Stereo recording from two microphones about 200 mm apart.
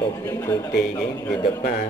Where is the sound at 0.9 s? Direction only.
15° left (ahead or behind).